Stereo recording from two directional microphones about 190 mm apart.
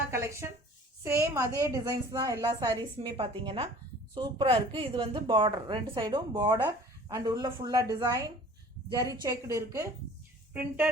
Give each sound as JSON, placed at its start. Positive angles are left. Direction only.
{"t": 0.1, "sound": "speech", "side_deg": -15}
{"t": 3.0, "sound": "a woman's voice", "side_deg": -25}